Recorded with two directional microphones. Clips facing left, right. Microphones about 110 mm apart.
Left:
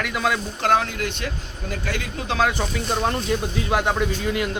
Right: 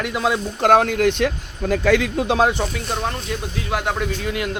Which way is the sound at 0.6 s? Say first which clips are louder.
Right 5 dB; 50° right (ahead or behind).